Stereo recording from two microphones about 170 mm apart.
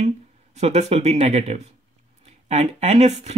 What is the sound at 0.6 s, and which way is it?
Speech, 40° right (ahead or behind).